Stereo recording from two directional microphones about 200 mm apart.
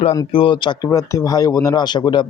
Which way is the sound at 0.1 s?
20° left (ahead or behind).